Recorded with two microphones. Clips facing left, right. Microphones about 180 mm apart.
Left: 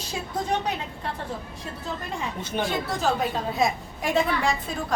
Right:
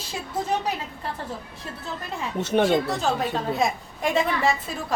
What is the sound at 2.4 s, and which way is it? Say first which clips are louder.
Speech: right 10 dB; 70° right (ahead or behind).